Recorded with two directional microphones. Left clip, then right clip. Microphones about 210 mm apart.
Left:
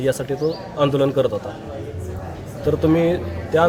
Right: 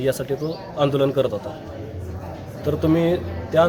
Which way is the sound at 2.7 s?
Centre (ahead or behind).